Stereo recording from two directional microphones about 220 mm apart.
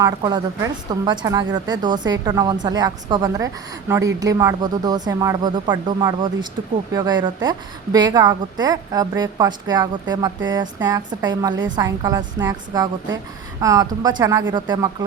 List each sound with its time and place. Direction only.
0.0 s a woman's voice: 20° right (ahead or behind)